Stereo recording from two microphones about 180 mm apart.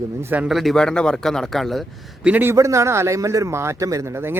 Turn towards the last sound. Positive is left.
turn(degrees=-15)  # may be behind; listen again after turning